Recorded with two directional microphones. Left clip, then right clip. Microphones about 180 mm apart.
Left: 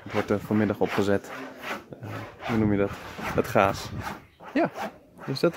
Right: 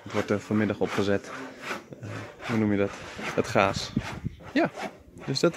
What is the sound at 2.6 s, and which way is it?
Speech, 10° left (ahead or behind).